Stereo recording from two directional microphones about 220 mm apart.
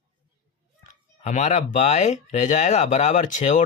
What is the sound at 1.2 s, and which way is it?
Speech, 30° left (ahead or behind).